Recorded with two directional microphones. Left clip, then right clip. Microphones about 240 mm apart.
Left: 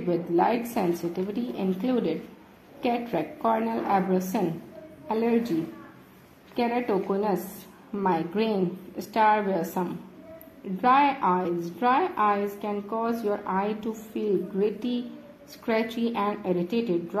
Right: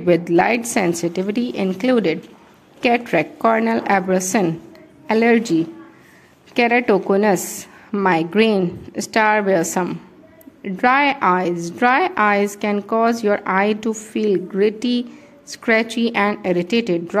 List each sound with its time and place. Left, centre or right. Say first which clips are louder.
0.0 s a woman's voice: right 9 dB; right
6.5 s a woman's voice: right 11 dB; right